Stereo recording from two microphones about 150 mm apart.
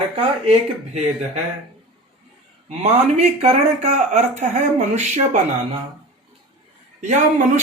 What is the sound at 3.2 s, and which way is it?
Speech, 50° right (ahead or behind).